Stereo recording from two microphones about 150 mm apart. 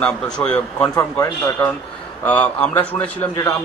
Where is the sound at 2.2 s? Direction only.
10° left (ahead or behind).